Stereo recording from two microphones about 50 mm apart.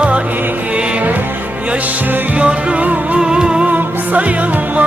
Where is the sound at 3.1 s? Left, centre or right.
Centre.